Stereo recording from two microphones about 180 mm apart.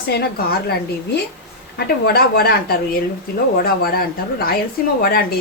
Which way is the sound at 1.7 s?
60° left (ahead or behind).